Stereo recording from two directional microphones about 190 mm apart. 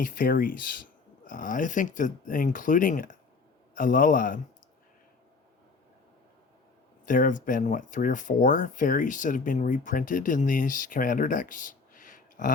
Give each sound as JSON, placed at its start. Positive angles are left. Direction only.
{"t": 0.0, "sound": "speech", "side_deg": 45}
{"t": 7.0, "sound": "speech", "side_deg": 45}